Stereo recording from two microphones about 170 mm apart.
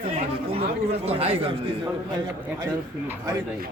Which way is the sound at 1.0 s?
35° right (ahead or behind).